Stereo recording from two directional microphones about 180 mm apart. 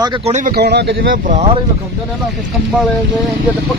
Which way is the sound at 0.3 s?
60° right (ahead or behind).